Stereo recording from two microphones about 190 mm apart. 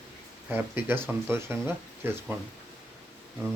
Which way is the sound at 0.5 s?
10° right (ahead or behind).